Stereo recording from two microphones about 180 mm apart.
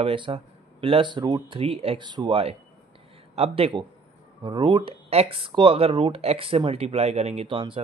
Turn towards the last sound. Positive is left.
turn(degrees=-30)  # may be behind; listen again after turning